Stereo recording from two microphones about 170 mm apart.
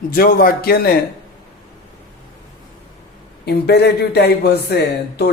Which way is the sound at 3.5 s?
70° left (ahead or behind).